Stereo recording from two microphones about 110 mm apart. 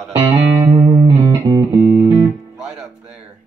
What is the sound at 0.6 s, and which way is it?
Music, 40° right (ahead or behind).